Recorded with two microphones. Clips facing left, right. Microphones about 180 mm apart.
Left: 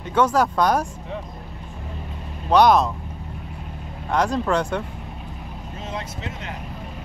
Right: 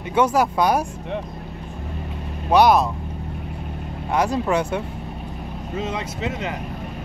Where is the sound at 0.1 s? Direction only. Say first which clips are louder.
Right 1 dB; 10° right (ahead or behind).